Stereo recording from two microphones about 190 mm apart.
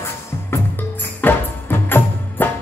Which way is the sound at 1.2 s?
10° left (ahead or behind).